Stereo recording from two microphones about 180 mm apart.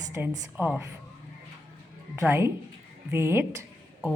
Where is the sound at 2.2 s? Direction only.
15° right (ahead or behind).